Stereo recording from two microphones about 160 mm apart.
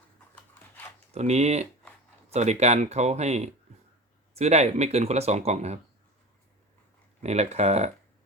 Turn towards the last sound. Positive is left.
turn(degrees=-45)  # may be behind; listen again after turning